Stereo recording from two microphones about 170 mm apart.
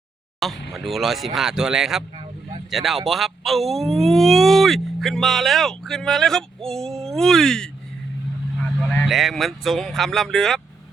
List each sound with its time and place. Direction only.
0.3 s speech: centre (ahead or behind)
8.9 s speech: centre (ahead or behind)